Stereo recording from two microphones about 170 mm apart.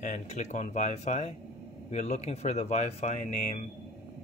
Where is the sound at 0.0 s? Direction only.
45° left (ahead or behind).